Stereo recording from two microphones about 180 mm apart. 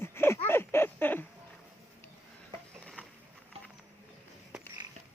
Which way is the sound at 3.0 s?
10° left (ahead or behind).